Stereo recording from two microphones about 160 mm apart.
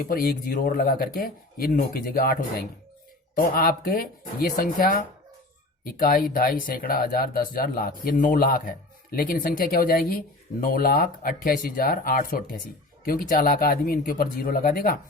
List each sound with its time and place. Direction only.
0.0 s speech: 65° left (ahead or behind)